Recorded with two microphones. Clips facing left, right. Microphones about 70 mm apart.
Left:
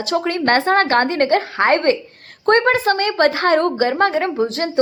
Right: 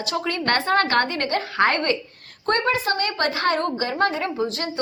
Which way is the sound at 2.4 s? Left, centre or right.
Left.